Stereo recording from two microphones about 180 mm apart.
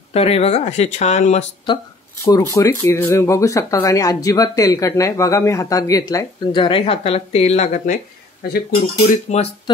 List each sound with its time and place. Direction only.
0.1 s speech: 35° left (ahead or behind)
2.2 s speech: 20° left (ahead or behind); by 7.9 s 40° left (ahead or behind)
8.4 s speech: 60° left (ahead or behind)
9.3 s speech: 40° left (ahead or behind)